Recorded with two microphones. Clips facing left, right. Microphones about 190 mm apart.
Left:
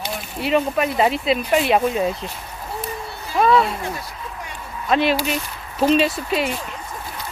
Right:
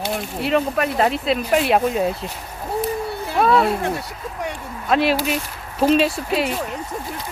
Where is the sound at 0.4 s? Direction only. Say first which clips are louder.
Left 1 dB; centre (ahead or behind).